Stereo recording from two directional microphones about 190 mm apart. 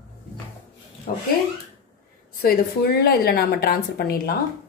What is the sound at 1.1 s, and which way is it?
Speech, 45° left (ahead or behind).